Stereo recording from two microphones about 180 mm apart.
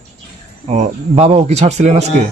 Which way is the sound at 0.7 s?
40° right (ahead or behind).